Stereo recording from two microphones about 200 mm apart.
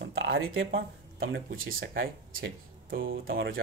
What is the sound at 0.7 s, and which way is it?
Speech, 50° right (ahead or behind).